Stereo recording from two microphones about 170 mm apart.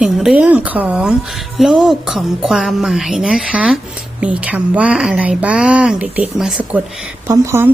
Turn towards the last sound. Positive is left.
turn(degrees=-15)  # may be behind; listen again after turning